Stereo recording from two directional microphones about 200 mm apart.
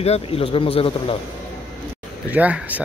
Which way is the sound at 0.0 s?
30° left (ahead or behind).